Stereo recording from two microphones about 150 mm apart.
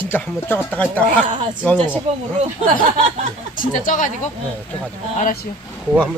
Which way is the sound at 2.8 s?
40° right (ahead or behind).